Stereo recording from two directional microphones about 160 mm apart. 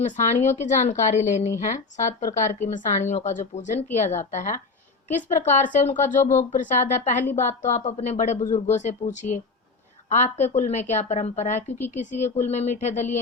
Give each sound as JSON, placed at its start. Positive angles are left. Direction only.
{"t": 0.0, "sound": "speech", "side_deg": 50}